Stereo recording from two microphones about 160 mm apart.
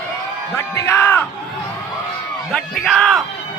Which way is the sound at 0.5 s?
15° left (ahead or behind).